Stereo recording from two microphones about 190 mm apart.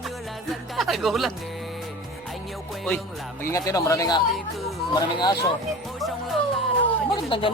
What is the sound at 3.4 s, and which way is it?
Speech, 15° left (ahead or behind).